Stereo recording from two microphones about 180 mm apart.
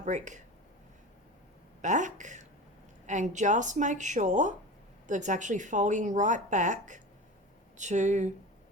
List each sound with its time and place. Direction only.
0.0 s speech: 40° right (ahead or behind)
1.8 s speech: 45° right (ahead or behind)